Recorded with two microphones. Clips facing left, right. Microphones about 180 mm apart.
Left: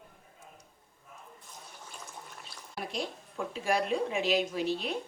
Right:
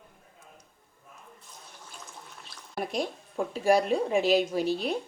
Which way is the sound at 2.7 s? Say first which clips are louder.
Right 6 dB; 45° right (ahead or behind).